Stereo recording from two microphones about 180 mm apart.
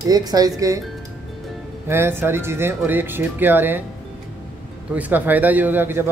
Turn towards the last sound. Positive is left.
turn(degrees=-10)  # may be behind; listen again after turning